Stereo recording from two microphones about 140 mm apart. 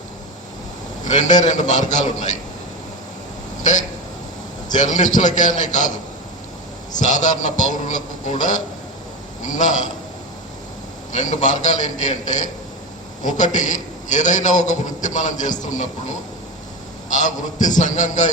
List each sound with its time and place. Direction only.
1.0 s a man's voice: 60° left (ahead or behind)
3.6 s a man's voice: 60° left (ahead or behind)
7.0 s a man's voice: 60° left (ahead or behind)
11.1 s a man's voice: 60° left (ahead or behind)